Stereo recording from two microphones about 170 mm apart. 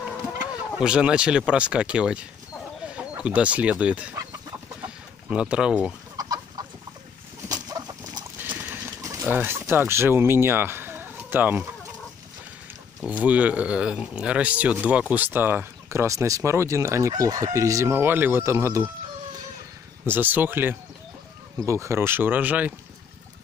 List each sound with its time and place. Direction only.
0.0 s speech: 5° right (ahead or behind)
4.8 s chicken: 5° right (ahead or behind)
6.1 s chicken: 25° right (ahead or behind)
7.4 s bird: 20° right (ahead or behind)
8.5 s a sound: 15° right (ahead or behind)
9.2 s speech: 10° right (ahead or behind)
13.0 s speech: 10° right (ahead or behind)
20.1 s speech: 10° right (ahead or behind)